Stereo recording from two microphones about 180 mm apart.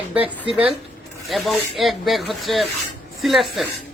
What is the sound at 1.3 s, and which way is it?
Speech, centre (ahead or behind).